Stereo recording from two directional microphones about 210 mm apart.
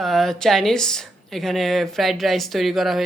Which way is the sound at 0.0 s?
Centre (ahead or behind).